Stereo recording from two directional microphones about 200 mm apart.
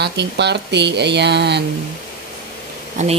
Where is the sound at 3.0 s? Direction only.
35° right (ahead or behind).